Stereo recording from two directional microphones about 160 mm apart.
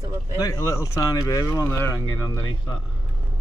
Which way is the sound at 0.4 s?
20° left (ahead or behind).